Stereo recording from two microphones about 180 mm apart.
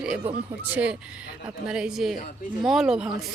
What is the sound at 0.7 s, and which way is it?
Speech, 5° right (ahead or behind).